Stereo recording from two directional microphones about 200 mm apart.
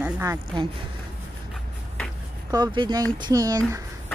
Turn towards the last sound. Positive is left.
turn(degrees=-15)  # may be behind; listen again after turning